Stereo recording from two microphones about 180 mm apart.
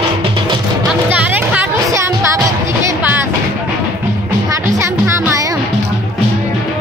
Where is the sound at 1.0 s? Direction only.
10° right (ahead or behind).